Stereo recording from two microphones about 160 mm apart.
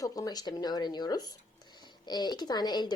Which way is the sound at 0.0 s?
25° left (ahead or behind).